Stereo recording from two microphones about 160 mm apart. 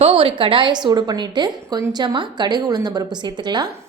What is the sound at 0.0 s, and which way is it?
A woman's voice, 35° right (ahead or behind).